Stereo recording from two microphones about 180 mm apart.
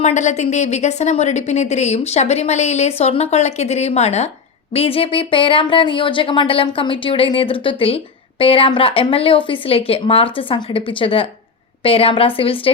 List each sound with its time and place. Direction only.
0.0 s a woman's voice: 40° left (ahead or behind)